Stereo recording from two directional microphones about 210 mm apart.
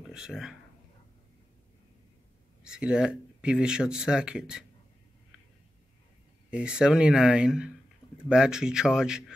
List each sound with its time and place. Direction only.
0.0 s speech: 5° right (ahead or behind)
2.6 s speech: 5° right (ahead or behind)
6.5 s speech: 5° right (ahead or behind)